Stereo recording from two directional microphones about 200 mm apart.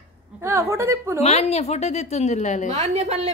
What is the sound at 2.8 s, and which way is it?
Speech, 35° right (ahead or behind).